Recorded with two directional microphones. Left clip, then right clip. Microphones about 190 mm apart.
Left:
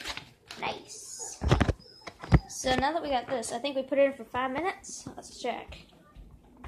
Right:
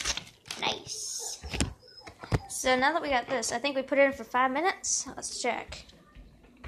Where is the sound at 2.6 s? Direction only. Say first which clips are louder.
Right 4 dB; 10° right (ahead or behind).